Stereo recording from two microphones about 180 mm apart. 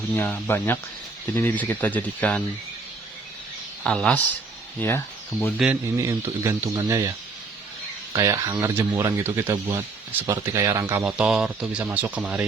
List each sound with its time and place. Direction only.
0.2 s speech: 10° left (ahead or behind)
3.8 s a man's voice: 5° left (ahead or behind)
6.0 s speech: 15° right (ahead or behind)
8.1 s speech: 20° right (ahead or behind)